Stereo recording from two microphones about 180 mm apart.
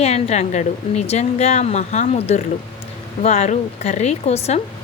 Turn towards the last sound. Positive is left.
turn(degrees=35)  # may be behind; listen again after turning